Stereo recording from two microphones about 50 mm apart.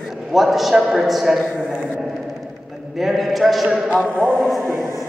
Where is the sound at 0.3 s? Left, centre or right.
Centre.